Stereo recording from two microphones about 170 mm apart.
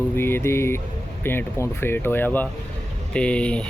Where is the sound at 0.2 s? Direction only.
15° left (ahead or behind).